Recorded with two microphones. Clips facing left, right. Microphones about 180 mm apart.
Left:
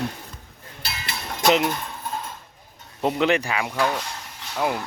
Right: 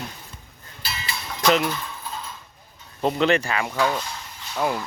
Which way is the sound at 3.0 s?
15° left (ahead or behind).